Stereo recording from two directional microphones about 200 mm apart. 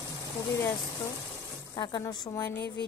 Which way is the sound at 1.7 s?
20° left (ahead or behind).